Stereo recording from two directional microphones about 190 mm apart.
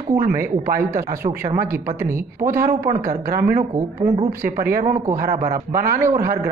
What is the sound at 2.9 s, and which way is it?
Speech, 50° right (ahead or behind).